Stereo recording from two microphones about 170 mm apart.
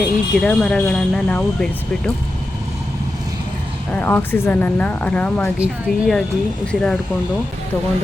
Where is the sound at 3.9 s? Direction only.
10° left (ahead or behind).